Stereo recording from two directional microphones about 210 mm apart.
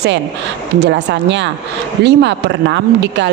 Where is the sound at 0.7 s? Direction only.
55° right (ahead or behind).